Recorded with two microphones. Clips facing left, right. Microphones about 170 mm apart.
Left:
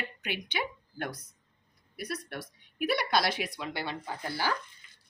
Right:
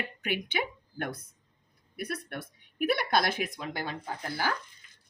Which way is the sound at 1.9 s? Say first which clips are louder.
Right 1 dB; 55° right (ahead or behind).